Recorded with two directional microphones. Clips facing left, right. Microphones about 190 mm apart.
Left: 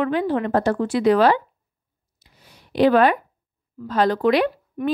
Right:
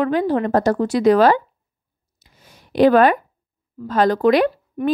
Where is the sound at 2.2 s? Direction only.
45° right (ahead or behind).